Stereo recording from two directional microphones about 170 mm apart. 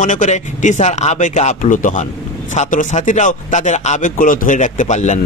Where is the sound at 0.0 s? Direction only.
45° left (ahead or behind).